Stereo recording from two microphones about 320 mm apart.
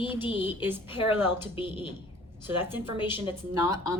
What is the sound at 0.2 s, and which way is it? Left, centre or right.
Speech, centre.